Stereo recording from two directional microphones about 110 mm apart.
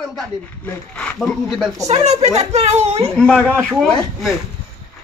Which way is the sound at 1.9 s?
80° right.